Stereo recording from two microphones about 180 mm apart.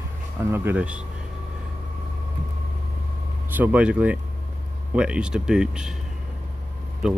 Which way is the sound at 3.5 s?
10° right (ahead or behind).